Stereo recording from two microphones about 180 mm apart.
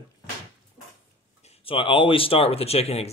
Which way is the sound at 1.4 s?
35° left (ahead or behind).